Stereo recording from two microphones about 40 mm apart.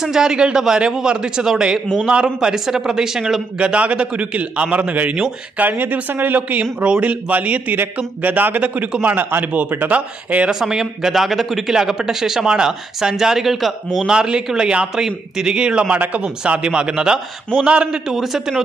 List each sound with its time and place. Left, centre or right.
0.0 s speech: centre
2.6 s speech: centre
3.5 s a man's voice: right
9.9 s a man's voice: right
10.5 s speech: centre
11.7 s speech: centre
13.9 s speech: centre
15.9 s a man's voice: right
18.0 s speech: centre